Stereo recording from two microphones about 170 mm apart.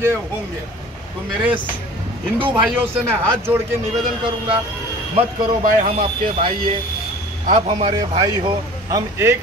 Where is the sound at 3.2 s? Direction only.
15° right (ahead or behind).